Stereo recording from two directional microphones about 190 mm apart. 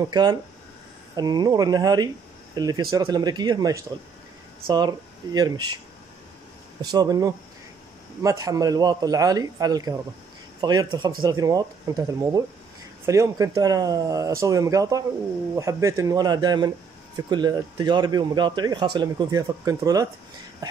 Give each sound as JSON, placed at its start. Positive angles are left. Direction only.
{"t": 0.1, "sound": "speech", "side_deg": -20}
{"t": 6.8, "sound": "speech", "side_deg": -20}